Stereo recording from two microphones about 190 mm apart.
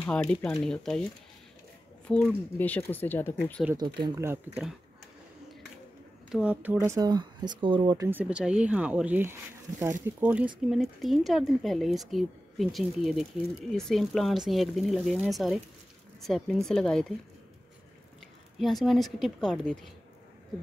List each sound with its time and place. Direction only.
0.0 s speech: 5° left (ahead or behind)
2.0 s speech: 5° left (ahead or behind)
4.0 s speech: 15° right (ahead or behind)
6.3 s speech: 10° right (ahead or behind); by 8.1 s 25° right (ahead or behind)
8.1 s speech: 5° right (ahead or behind)
18.6 s speech: centre (ahead or behind)